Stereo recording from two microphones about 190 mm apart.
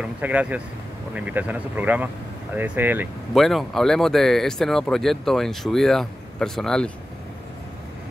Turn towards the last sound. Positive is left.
turn(degrees=0)  # may be behind; listen again after turning